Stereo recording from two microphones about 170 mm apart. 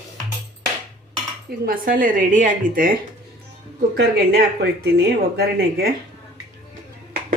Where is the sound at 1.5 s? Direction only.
60° right (ahead or behind).